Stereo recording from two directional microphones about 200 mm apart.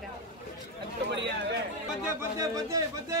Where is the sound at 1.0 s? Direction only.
60° right (ahead or behind).